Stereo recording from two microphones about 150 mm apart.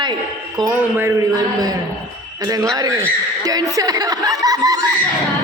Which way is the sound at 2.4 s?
25° right (ahead or behind).